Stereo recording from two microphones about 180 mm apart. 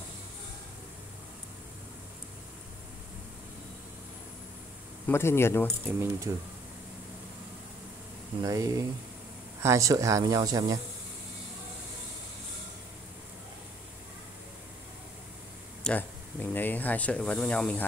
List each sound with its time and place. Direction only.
5.0 s speech: 15° left (ahead or behind)
5.7 s speech: 15° right (ahead or behind)
8.5 s speech: 20° right (ahead or behind)
15.8 s speech: 10° left (ahead or behind)